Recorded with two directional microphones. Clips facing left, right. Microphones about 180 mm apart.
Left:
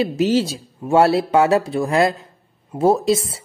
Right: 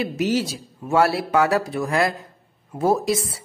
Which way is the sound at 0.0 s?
30° left (ahead or behind).